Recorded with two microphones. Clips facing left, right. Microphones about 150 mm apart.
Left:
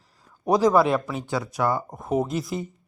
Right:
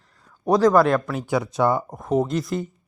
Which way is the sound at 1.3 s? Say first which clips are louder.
Right 4 dB; 20° right (ahead or behind).